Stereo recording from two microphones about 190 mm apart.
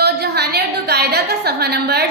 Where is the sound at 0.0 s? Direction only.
60° right (ahead or behind).